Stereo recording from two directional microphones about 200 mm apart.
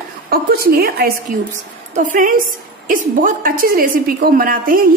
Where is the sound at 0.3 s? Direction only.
50° right (ahead or behind).